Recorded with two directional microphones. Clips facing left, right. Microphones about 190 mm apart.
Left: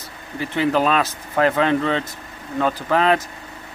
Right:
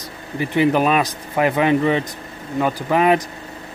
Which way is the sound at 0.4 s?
15° right (ahead or behind).